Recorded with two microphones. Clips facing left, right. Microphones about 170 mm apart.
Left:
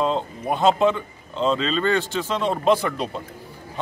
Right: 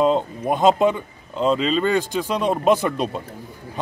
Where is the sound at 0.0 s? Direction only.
15° right (ahead or behind).